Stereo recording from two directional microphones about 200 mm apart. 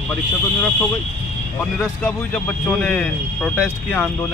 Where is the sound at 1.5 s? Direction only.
10° left (ahead or behind).